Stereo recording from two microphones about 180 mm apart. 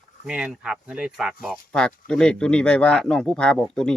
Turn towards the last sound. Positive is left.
turn(degrees=5)  # may be behind; listen again after turning